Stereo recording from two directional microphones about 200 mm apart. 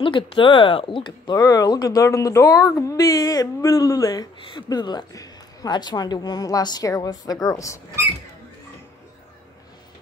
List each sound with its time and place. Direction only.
0.0 s speech: 25° left (ahead or behind)